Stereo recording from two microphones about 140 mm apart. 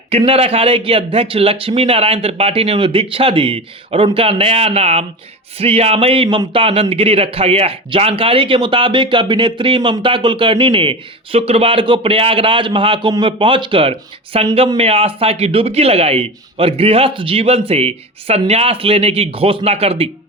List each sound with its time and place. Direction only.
0.1 s a man's voice: 45° right (ahead or behind)